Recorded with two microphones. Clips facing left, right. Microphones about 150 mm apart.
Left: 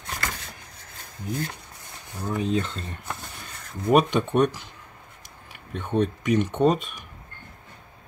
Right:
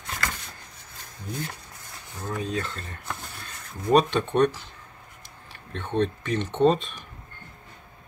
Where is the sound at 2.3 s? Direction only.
20° left (ahead or behind).